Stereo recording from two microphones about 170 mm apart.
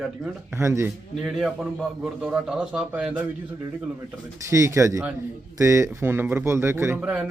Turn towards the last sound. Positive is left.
turn(degrees=-10)  # may be behind; listen again after turning